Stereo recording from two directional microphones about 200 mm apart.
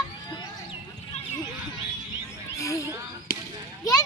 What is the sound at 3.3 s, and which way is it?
Basketball bounce, 45° left (ahead or behind).